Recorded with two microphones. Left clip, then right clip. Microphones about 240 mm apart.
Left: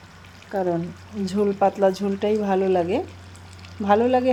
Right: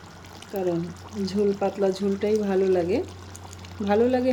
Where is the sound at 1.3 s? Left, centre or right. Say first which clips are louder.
Left 4 dB; centre.